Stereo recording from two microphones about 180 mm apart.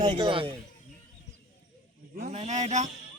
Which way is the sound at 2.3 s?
40° right (ahead or behind).